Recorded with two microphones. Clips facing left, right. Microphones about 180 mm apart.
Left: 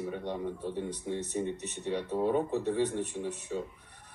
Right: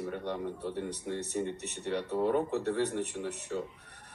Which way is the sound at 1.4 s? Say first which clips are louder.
Left 1 dB; 15° left (ahead or behind).